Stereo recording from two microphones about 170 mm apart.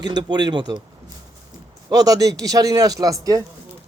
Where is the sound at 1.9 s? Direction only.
20° right (ahead or behind).